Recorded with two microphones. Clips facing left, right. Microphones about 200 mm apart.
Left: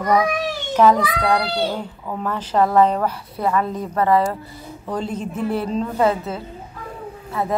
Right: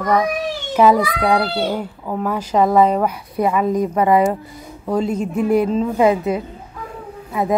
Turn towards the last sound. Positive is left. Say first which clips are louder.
# right 3 dB
turn(degrees=-15)  # may be behind; listen again after turning